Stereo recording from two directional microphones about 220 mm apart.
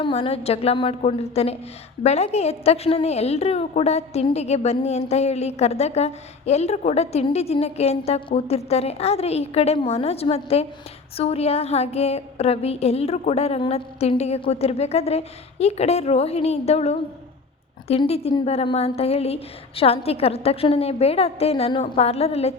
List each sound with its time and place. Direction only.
0.0 s a woman's voice: 25° left (ahead or behind)